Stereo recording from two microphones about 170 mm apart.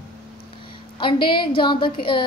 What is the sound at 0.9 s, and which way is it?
A woman's voice, 30° left (ahead or behind).